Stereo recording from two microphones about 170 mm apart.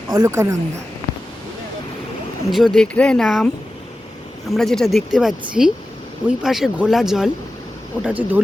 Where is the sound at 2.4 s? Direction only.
Centre (ahead or behind).